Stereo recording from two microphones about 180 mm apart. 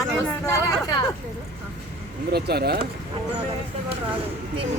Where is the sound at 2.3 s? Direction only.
65° right (ahead or behind).